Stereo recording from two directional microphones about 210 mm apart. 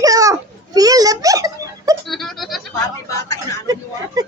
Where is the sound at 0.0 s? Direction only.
15° right (ahead or behind).